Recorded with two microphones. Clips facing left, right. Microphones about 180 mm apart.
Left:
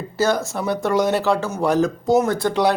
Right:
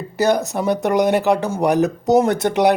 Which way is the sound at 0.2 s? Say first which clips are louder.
Right 3 dB; 15° right (ahead or behind).